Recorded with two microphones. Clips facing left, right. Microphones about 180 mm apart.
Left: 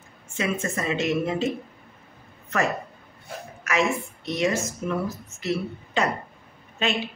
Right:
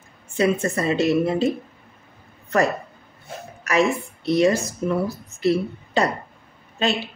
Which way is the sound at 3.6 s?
35° right (ahead or behind).